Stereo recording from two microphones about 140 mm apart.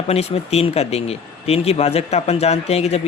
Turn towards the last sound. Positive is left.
turn(degrees=50)  # may be behind; listen again after turning